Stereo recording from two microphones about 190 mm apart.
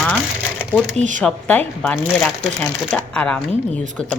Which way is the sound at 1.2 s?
5° left (ahead or behind).